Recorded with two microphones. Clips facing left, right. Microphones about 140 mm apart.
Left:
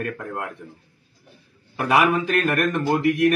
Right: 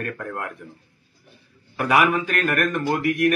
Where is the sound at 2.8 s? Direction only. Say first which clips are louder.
Left 2 dB; 10° left (ahead or behind).